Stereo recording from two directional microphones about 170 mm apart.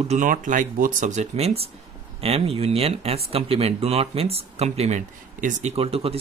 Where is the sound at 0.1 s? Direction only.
50° right (ahead or behind).